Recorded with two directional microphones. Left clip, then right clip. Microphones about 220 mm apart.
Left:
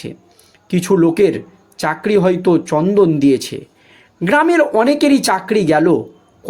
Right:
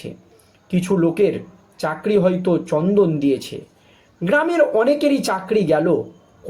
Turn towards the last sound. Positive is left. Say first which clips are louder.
# left 4 dB
turn(degrees=45)  # may be behind; listen again after turning